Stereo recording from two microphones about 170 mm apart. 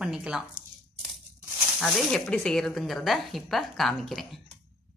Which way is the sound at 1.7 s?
Centre (ahead or behind).